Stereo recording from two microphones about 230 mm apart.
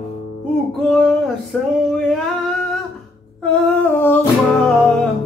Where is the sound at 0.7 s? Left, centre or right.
Centre.